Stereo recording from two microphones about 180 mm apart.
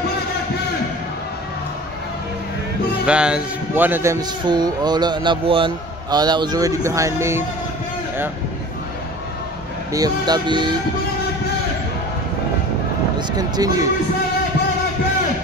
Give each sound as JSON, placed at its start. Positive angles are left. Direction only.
{"t": 3.1, "sound": "a man's voice", "side_deg": -5}
{"t": 9.9, "sound": "a man's voice", "side_deg": -20}
{"t": 13.4, "sound": "a man's voice", "side_deg": -20}